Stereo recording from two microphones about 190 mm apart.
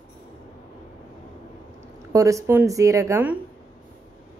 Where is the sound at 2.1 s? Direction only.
15° right (ahead or behind).